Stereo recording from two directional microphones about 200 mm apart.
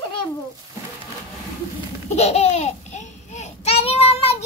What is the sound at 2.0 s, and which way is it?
Babbling, 30° left (ahead or behind).